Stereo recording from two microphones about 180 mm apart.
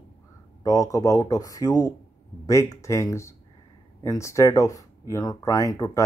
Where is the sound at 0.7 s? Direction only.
20° left (ahead or behind).